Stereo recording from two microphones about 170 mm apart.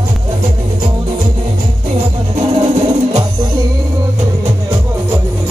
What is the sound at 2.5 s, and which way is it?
Music, 35° right (ahead or behind).